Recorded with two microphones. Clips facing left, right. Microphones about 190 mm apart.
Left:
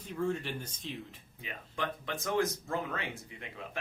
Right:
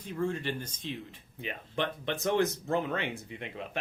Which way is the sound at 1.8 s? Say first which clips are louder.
Right 5 dB; 25° right (ahead or behind).